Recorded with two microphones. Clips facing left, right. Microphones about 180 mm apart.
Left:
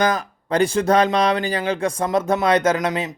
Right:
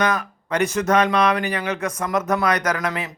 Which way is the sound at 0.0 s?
30° left (ahead or behind).